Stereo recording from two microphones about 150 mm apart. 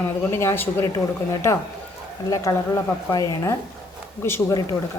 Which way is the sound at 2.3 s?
25° left (ahead or behind).